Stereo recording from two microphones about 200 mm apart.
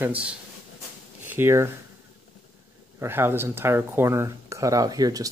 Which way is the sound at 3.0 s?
10° right (ahead or behind).